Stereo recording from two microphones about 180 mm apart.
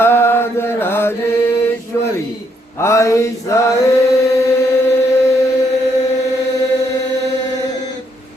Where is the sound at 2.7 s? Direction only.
15° left (ahead or behind).